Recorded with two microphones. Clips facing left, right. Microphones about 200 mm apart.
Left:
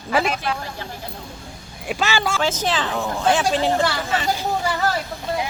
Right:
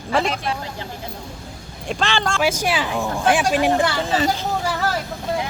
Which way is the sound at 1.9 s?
5° left (ahead or behind).